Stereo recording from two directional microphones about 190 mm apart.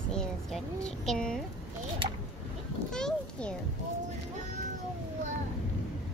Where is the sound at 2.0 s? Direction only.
25° right (ahead or behind).